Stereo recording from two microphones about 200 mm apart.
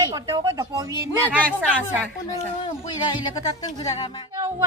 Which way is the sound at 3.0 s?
20° left (ahead or behind).